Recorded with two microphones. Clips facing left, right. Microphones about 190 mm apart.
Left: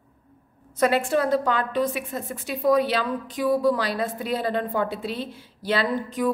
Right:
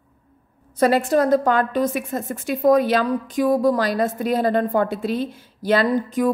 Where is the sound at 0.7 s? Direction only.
35° right (ahead or behind).